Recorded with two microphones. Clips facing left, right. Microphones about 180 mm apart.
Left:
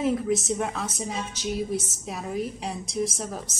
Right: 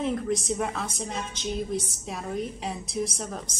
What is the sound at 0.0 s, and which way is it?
A woman's voice, 5° left (ahead or behind).